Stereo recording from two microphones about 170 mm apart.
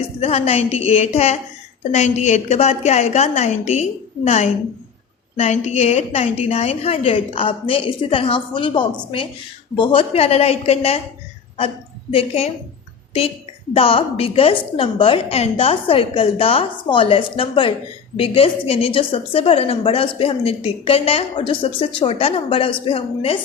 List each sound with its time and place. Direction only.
0.2 s a woman's voice: 35° left (ahead or behind)
12.1 s a woman's voice: 35° left (ahead or behind)
13.7 s a woman's voice: 35° left (ahead or behind)